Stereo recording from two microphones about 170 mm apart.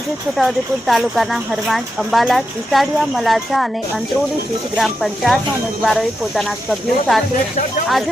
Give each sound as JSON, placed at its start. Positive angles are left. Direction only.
{"t": 0.3, "sound": "speech", "side_deg": 0}
{"t": 4.8, "sound": "speech", "side_deg": 0}